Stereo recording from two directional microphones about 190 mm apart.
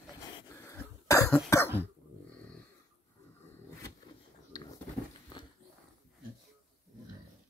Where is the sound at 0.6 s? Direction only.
15° left (ahead or behind).